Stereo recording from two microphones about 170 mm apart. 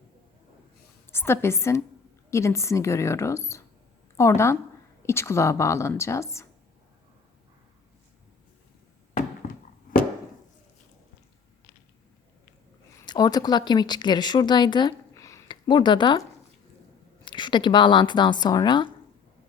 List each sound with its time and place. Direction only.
1.1 s a woman's voice: 15° left (ahead or behind)
13.1 s speech: 25° left (ahead or behind)
17.2 s a woman's voice: 25° left (ahead or behind)